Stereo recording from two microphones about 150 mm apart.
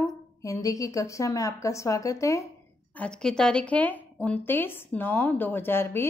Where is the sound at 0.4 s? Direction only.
20° left (ahead or behind).